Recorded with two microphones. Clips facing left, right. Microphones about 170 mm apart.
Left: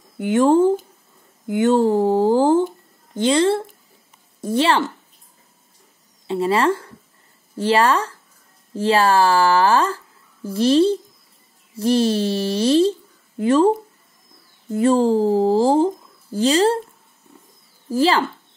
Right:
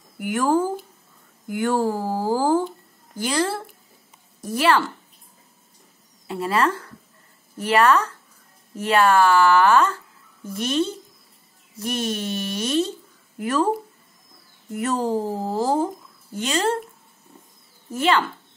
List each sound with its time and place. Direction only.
0.2 s speech: 25° left (ahead or behind)
6.2 s speech: 25° left (ahead or behind)
14.8 s speech: 30° left (ahead or behind)
17.9 s speech: 30° left (ahead or behind)